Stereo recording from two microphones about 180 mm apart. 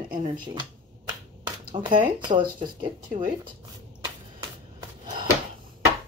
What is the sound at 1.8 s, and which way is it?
Speech, 30° right (ahead or behind).